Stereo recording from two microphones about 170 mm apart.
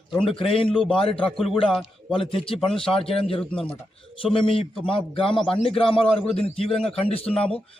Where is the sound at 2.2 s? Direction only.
30° left (ahead or behind).